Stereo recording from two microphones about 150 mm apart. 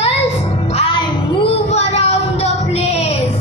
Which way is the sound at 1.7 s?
45° left (ahead or behind).